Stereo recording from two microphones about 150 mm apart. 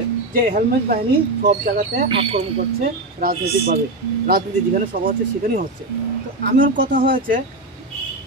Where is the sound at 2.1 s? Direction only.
35° right (ahead or behind).